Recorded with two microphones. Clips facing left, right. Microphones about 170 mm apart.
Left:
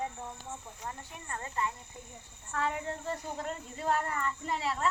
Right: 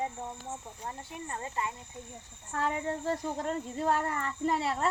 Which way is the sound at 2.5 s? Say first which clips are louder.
Right 2 dB; 40° right (ahead or behind).